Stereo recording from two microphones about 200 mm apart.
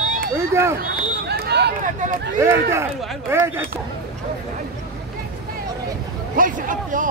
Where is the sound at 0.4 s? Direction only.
15° right (ahead or behind).